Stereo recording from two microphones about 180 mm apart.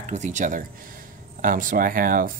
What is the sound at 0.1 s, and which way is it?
Speech, 40° right (ahead or behind).